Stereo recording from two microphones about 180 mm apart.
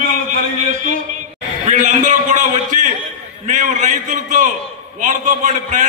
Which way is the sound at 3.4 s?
45° right (ahead or behind).